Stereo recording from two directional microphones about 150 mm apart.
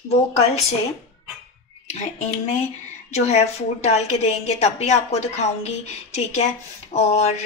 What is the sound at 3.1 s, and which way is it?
A woman's voice, 45° left (ahead or behind).